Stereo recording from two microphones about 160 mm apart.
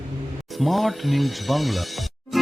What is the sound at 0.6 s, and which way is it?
Speech, centre (ahead or behind).